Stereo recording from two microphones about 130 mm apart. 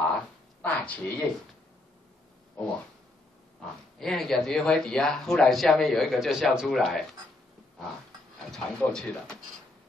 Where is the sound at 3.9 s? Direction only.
5° left (ahead or behind).